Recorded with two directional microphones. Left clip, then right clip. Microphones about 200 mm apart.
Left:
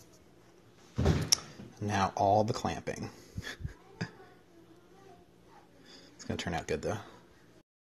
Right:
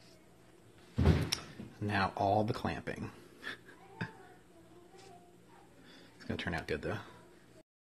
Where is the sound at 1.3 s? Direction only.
15° left (ahead or behind).